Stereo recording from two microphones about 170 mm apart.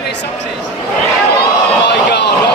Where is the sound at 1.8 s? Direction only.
85° left.